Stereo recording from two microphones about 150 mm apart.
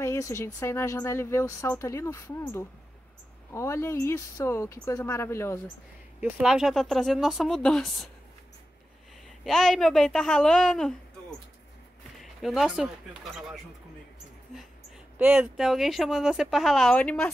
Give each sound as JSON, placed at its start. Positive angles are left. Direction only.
{"t": 0.0, "sound": "speech", "side_deg": 20}
{"t": 6.2, "sound": "speech", "side_deg": -5}
{"t": 9.4, "sound": "speech", "side_deg": 0}
{"t": 15.1, "sound": "speech", "side_deg": -10}